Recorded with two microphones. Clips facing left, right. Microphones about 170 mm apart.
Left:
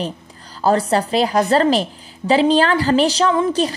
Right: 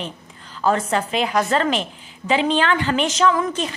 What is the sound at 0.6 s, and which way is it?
A woman's voice, 35° left (ahead or behind).